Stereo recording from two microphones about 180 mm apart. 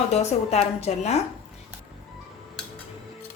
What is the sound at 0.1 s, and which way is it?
A woman's voice, 35° left (ahead or behind).